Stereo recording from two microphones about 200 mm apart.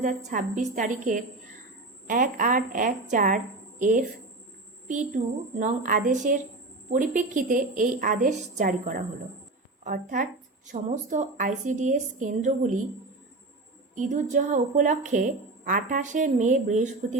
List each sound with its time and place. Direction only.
0.3 s a woman's voice: 40° right (ahead or behind)
13.9 s a woman's voice: 35° right (ahead or behind)